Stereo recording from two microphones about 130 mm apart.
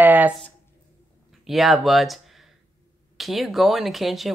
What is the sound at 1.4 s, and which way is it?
Speech, centre (ahead or behind).